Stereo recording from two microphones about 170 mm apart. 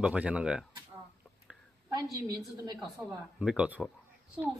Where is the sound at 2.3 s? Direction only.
25° right (ahead or behind).